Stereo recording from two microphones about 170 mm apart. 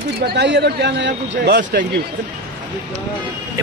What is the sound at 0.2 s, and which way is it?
Speech, 80° right.